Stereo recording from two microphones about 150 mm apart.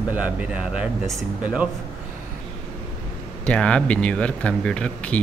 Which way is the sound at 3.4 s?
5° left (ahead or behind).